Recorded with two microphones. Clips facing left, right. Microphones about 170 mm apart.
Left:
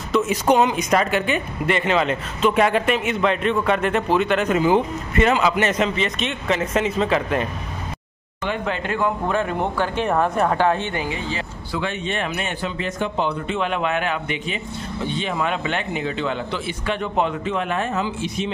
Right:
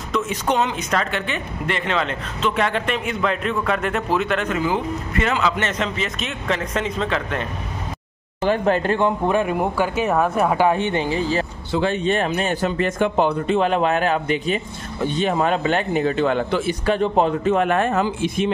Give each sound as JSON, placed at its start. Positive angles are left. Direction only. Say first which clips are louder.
{"t": 0.1, "sound": "speech", "louder": "left 4 dB", "side_deg": 10}
{"t": 4.5, "sound": "speech", "louder": "left 4 dB", "side_deg": 20}
{"t": 5.9, "sound": "speech", "louder": "left 3 dB", "side_deg": 0}
{"t": 8.5, "sound": "speech", "louder": "right 6 dB", "side_deg": -40}
{"t": 9.0, "sound": "speech", "louder": "right 3 dB", "side_deg": -15}
{"t": 11.1, "sound": "speech", "louder": "right 6 dB", "side_deg": -35}
{"t": 12.7, "sound": "speech", "louder": "right 4 dB", "side_deg": -50}
{"t": 17.6, "sound": "speech", "louder": "right 5 dB", "side_deg": -55}